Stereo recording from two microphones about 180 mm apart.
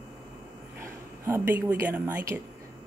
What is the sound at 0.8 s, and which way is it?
Speech, 15° right (ahead or behind).